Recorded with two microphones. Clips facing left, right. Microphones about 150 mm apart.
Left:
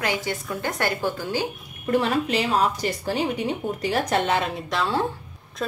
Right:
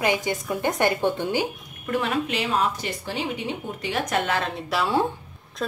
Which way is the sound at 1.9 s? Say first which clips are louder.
Left 3 dB; 35° left (ahead or behind).